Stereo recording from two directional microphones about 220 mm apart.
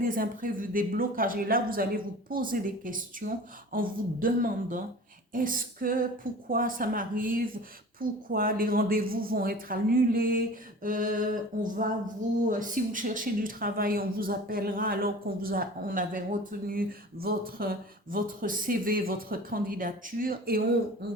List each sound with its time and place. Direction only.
0.0 s speech: 40° right (ahead or behind)